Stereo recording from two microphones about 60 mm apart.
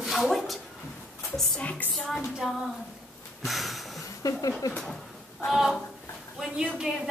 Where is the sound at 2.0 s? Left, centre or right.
Centre.